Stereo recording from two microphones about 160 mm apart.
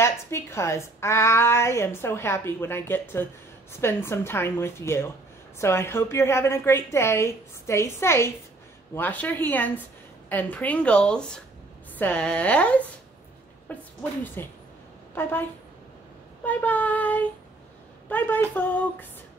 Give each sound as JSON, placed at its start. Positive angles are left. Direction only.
{"t": 0.0, "sound": "a woman's voice", "side_deg": 15}
{"t": 16.4, "sound": "a woman's voice", "side_deg": 10}